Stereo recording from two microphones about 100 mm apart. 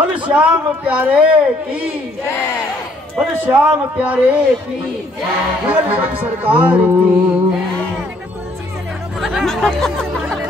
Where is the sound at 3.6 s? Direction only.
15° right (ahead or behind).